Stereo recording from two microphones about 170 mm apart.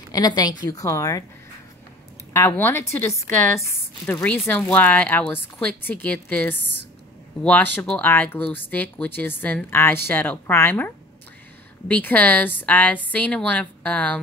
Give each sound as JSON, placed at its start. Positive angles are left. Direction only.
{"t": 0.1, "sound": "a woman's voice", "side_deg": 25}
{"t": 2.3, "sound": "a woman's voice", "side_deg": 15}
{"t": 7.7, "sound": "a woman's voice", "side_deg": 5}
{"t": 11.9, "sound": "a woman's voice", "side_deg": 10}